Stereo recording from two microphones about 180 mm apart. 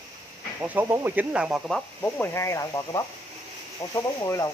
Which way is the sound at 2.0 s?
10° left (ahead or behind).